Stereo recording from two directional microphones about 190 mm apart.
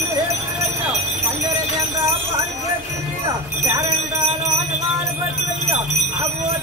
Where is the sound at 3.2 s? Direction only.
15° right (ahead or behind).